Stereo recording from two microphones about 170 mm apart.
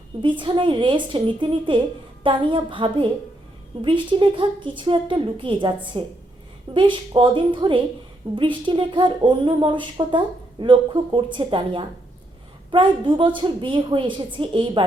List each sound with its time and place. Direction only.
0.2 s speech: 30° right (ahead or behind)